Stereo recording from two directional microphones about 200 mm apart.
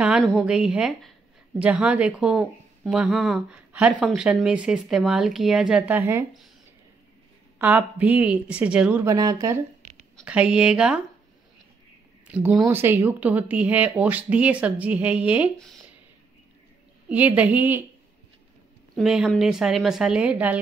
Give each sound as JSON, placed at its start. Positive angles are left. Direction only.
{"t": 0.4, "sound": "speech", "side_deg": -5}
{"t": 7.5, "sound": "speech", "side_deg": -10}
{"t": 9.8, "sound": "a sound", "side_deg": -35}
{"t": 10.1, "sound": "speech", "side_deg": -5}
{"t": 12.3, "sound": "speech", "side_deg": -5}
{"t": 17.1, "sound": "speech", "side_deg": -5}
{"t": 18.9, "sound": "speech", "side_deg": -5}